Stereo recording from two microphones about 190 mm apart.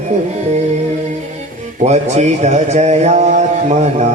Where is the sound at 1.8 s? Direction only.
35° right (ahead or behind).